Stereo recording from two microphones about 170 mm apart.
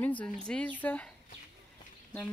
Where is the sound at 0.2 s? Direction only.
5° left (ahead or behind).